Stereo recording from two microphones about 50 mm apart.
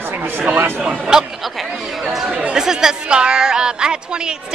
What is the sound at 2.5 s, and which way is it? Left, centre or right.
A woman's voice, centre.